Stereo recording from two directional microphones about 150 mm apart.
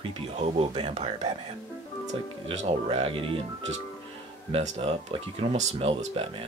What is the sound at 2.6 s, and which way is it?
Speech, 45° right (ahead or behind).